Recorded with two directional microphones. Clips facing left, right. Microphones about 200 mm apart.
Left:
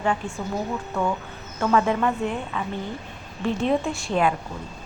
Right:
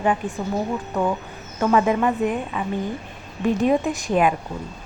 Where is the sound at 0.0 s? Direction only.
15° right (ahead or behind).